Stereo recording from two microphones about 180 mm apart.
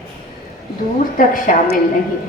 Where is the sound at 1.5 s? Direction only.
45° left (ahead or behind).